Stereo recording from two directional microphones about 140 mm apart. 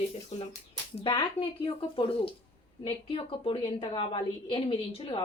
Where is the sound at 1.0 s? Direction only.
40° left (ahead or behind).